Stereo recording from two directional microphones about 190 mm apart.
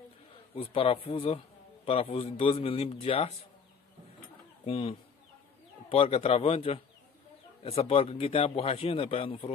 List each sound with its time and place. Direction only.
0.6 s a man's voice: 30° left (ahead or behind)
4.6 s a man's voice: 30° left (ahead or behind)